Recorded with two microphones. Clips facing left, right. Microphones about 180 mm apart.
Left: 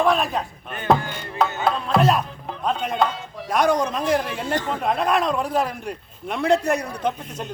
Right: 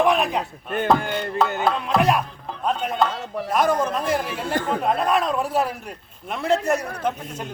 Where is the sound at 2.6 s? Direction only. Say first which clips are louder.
Even; 5° right (ahead or behind).